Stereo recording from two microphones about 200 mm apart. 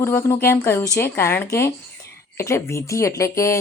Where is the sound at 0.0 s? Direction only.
10° left (ahead or behind).